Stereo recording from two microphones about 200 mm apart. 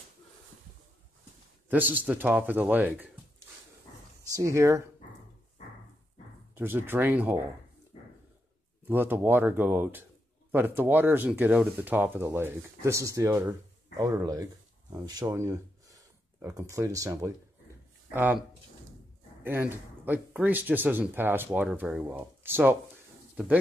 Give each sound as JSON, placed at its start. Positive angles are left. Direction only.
{"t": 1.7, "sound": "speech", "side_deg": -10}
{"t": 4.3, "sound": "speech", "side_deg": -15}
{"t": 6.5, "sound": "speech", "side_deg": -10}
{"t": 8.8, "sound": "speech", "side_deg": -10}
{"t": 19.4, "sound": "speech", "side_deg": -10}